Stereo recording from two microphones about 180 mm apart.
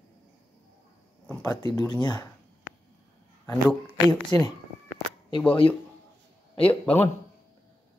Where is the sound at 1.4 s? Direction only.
20° left (ahead or behind).